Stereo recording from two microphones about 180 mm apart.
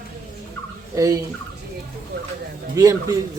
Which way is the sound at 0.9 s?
20° right (ahead or behind).